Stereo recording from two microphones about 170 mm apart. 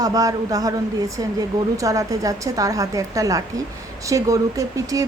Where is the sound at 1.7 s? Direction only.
20° right (ahead or behind).